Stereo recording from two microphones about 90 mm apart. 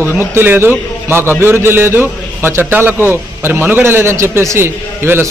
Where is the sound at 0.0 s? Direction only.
25° right (ahead or behind).